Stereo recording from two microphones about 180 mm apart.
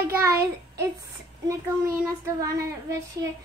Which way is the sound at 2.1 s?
20° right (ahead or behind).